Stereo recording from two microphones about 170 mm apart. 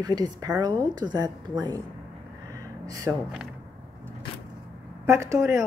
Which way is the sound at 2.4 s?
20° right (ahead or behind).